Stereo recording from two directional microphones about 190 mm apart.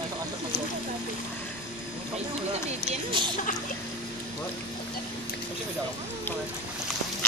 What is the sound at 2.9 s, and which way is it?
Speech, 25° right (ahead or behind).